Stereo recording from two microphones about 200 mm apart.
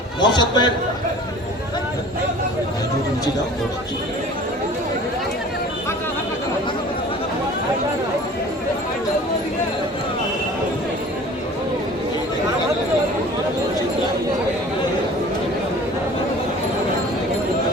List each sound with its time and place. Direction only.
0.2 s a man's voice: 20° left (ahead or behind)